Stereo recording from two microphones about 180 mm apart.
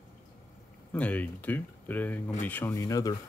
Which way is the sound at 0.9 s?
10° left (ahead or behind).